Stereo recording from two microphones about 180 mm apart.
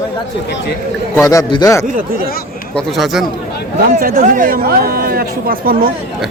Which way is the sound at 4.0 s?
55° right (ahead or behind).